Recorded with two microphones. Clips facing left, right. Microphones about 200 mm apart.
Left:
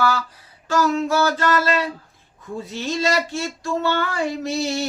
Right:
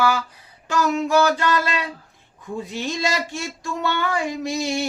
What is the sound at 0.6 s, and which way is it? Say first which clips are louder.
Speech: left 1 dB; 15° right (ahead or behind).